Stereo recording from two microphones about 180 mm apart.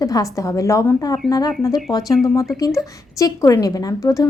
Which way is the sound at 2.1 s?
Centre (ahead or behind).